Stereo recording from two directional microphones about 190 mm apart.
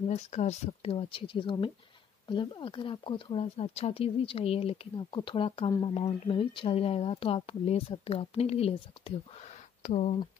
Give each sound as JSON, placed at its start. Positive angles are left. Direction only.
{"t": 0.1, "sound": "speech", "side_deg": 35}